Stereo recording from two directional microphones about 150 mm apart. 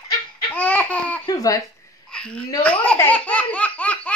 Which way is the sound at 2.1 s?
5° left (ahead or behind).